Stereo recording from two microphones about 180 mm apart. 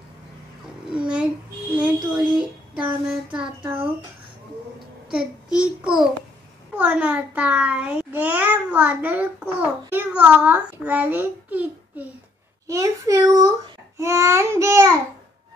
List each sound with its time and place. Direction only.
0.9 s a child's voice: 5° right (ahead or behind)
5.1 s a child's voice: 5° right (ahead or behind)